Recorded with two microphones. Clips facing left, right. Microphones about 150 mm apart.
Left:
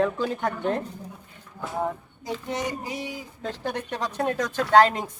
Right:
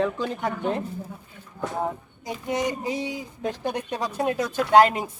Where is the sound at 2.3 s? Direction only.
15° right (ahead or behind).